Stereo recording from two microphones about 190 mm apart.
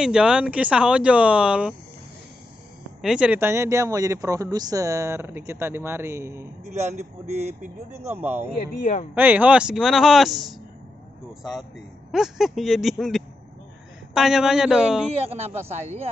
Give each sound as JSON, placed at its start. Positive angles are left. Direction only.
{"t": 0.0, "sound": "speech", "side_deg": -5}
{"t": 3.0, "sound": "speech", "side_deg": -5}
{"t": 6.6, "sound": "speech", "side_deg": -35}
{"t": 8.1, "sound": "speech", "side_deg": -10}
{"t": 12.1, "sound": "speech", "side_deg": 0}
{"t": 15.2, "sound": "speech", "side_deg": -30}